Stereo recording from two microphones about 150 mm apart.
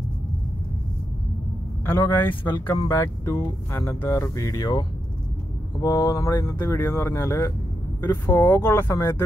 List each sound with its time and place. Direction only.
2.0 s speech: 15° left (ahead or behind)